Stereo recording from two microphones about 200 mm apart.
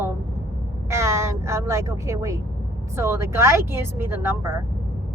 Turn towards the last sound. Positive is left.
turn(degrees=-10)  # may be behind; listen again after turning